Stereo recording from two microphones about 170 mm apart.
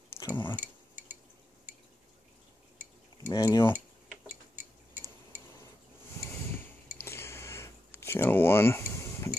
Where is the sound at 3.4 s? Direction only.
15° left (ahead or behind).